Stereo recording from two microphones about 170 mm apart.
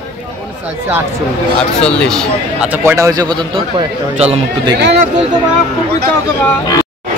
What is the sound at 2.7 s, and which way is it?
Speech, 15° right (ahead or behind).